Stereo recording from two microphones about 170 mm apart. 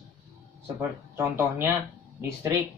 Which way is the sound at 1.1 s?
15° right (ahead or behind).